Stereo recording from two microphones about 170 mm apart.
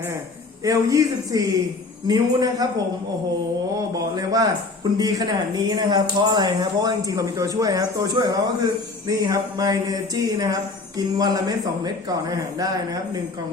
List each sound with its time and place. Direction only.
0.6 s speech: 20° right (ahead or behind)
3.9 s speech: 20° right (ahead or behind)
12.5 s speech: 20° right (ahead or behind)